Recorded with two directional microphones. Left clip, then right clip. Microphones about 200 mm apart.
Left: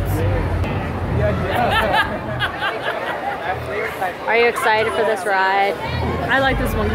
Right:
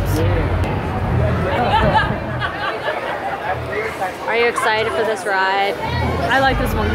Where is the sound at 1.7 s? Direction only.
40° left (ahead or behind).